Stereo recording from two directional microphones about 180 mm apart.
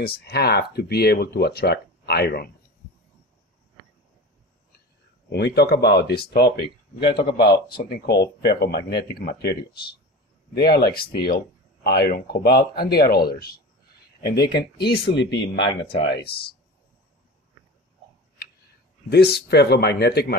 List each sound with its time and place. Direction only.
0.0 s speech: 60° left (ahead or behind)
5.3 s speech: 65° left (ahead or behind)
10.7 s speech: 60° left (ahead or behind)
19.0 s speech: 65° left (ahead or behind)